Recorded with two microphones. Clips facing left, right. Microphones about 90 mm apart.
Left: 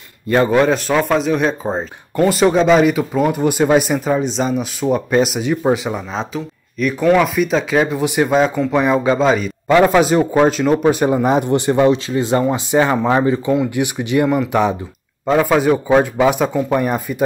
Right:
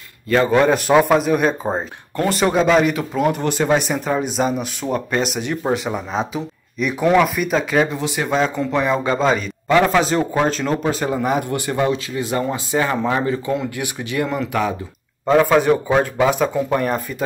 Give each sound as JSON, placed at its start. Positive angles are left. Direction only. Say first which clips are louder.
{"t": 0.8, "sound": "speech", "louder": "right 2 dB", "side_deg": -15}
{"t": 5.9, "sound": "speech", "louder": "even", "side_deg": -5}
{"t": 7.2, "sound": "speech", "louder": "left 3 dB", "side_deg": 0}
{"t": 8.0, "sound": "speech", "louder": "left 6 dB", "side_deg": 15}
{"t": 8.4, "sound": "speech", "louder": "left 2 dB", "side_deg": 0}
{"t": 14.5, "sound": "speech", "louder": "left 5 dB", "side_deg": 25}
{"t": 15.2, "sound": "speech", "louder": "even", "side_deg": 10}